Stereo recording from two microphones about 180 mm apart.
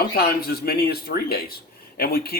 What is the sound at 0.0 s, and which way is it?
Speech, 60° left (ahead or behind).